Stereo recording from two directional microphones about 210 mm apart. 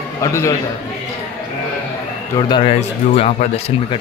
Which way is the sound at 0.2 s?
15° left (ahead or behind).